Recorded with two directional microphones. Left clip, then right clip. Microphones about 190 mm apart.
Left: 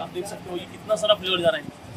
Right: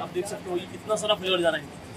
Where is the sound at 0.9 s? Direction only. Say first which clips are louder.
Left 3 dB; 30° left (ahead or behind).